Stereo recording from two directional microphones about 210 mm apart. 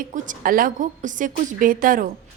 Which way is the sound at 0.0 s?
40° right (ahead or behind).